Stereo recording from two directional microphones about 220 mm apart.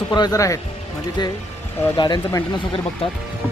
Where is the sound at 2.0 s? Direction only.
15° left (ahead or behind).